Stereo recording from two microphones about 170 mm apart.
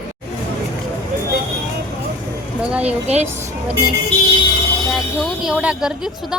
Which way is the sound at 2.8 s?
40° right (ahead or behind).